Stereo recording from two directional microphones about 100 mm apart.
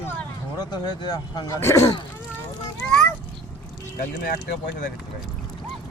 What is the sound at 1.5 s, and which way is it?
Speech, 30° left (ahead or behind).